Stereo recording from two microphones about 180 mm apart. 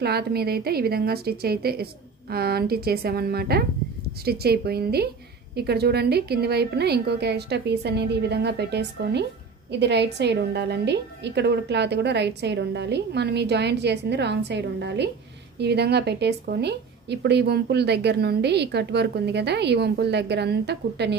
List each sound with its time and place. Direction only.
0.0 s a woman's voice: 60° right (ahead or behind)